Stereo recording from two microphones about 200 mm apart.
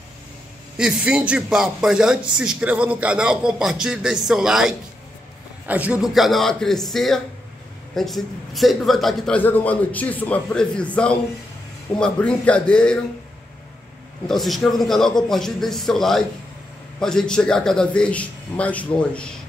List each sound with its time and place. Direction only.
0.7 s a man's voice: 5° right (ahead or behind)
14.2 s a man's voice: centre (ahead or behind)